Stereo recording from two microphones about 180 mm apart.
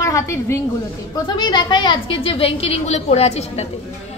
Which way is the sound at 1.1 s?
25° left (ahead or behind).